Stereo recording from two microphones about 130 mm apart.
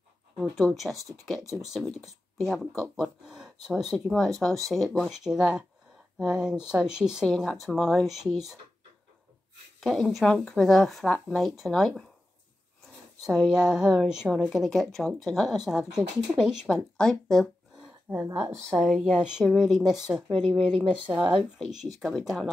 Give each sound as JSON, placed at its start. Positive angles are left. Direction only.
{"t": 0.4, "sound": "speech", "side_deg": 0}
{"t": 9.8, "sound": "speech", "side_deg": 0}
{"t": 13.2, "sound": "speech", "side_deg": -5}
{"t": 18.1, "sound": "a woman's voice", "side_deg": -20}
{"t": 18.7, "sound": "speech", "side_deg": 5}
{"t": 21.5, "sound": "speech", "side_deg": -5}